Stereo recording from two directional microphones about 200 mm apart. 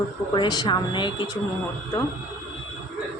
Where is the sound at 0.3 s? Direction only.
20° left (ahead or behind).